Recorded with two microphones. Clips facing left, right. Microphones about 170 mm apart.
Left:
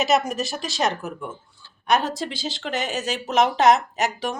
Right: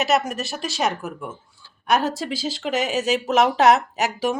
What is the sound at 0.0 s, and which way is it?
Speech, 5° right (ahead or behind).